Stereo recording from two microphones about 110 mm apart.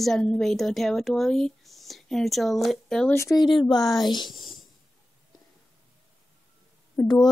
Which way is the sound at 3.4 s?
45° left (ahead or behind).